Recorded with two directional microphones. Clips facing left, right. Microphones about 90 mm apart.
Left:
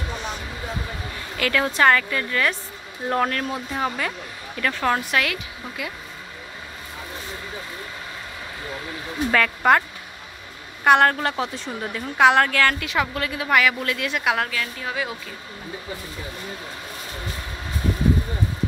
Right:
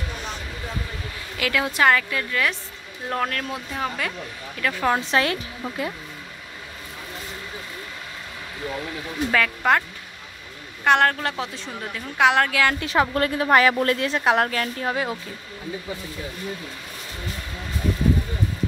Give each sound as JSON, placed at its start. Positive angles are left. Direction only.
{"t": 1.4, "sound": "a woman's voice", "side_deg": -5}
{"t": 5.1, "sound": "a woman's voice", "side_deg": -35}
{"t": 9.3, "sound": "a woman's voice", "side_deg": 0}
{"t": 12.8, "sound": "a woman's voice", "side_deg": -35}